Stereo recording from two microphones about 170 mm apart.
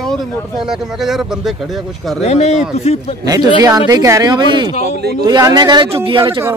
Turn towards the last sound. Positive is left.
turn(degrees=-30)  # may be behind; listen again after turning